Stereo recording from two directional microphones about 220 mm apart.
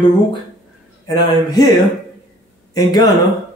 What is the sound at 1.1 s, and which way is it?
Speech, 15° left (ahead or behind).